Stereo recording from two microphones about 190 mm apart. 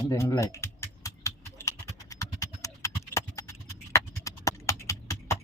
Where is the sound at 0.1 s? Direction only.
15° left (ahead or behind).